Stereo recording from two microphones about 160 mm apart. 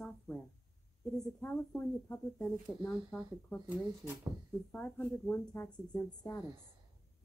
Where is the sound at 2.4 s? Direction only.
Centre (ahead or behind).